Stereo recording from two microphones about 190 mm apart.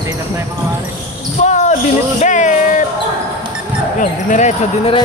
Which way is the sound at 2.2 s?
40° left (ahead or behind).